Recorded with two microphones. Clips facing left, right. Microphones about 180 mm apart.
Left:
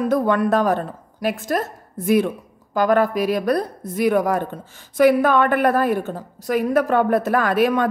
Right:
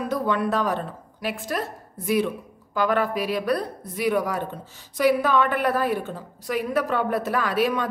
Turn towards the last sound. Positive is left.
turn(degrees=55)  # may be behind; listen again after turning